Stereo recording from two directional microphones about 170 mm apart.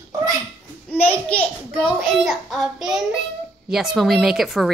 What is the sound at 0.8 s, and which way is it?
Child singing, 10° left (ahead or behind).